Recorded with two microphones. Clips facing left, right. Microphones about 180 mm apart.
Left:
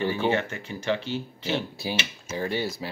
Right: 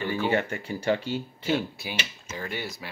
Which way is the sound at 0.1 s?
20° left (ahead or behind).